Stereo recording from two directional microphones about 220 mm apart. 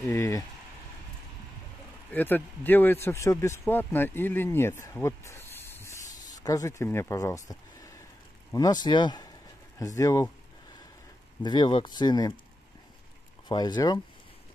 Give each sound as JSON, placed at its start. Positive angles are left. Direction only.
{"t": 0.0, "sound": "speech", "side_deg": 15}
{"t": 2.1, "sound": "a man's voice", "side_deg": 10}
{"t": 5.0, "sound": "snake", "side_deg": 10}
{"t": 8.5, "sound": "a man's voice", "side_deg": 20}
{"t": 11.4, "sound": "speech", "side_deg": 20}
{"t": 13.5, "sound": "speech", "side_deg": 20}